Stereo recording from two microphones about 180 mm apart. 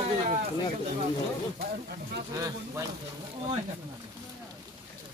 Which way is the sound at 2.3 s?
20° right (ahead or behind).